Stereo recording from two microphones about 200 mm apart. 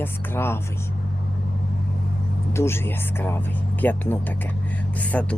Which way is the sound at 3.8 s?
10° left (ahead or behind).